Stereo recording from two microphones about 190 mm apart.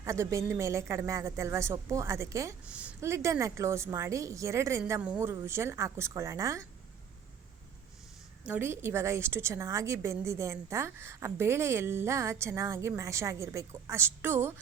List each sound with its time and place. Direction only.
0.0 s a woman's voice: 15° right (ahead or behind)
8.4 s a woman's voice: 10° right (ahead or behind)